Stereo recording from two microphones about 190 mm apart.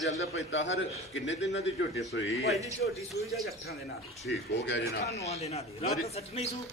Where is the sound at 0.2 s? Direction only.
75° left (ahead or behind).